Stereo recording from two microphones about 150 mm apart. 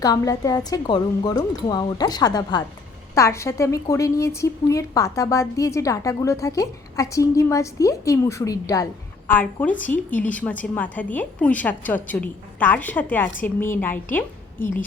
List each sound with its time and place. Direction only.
0.0 s a woman's voice: 25° left (ahead or behind)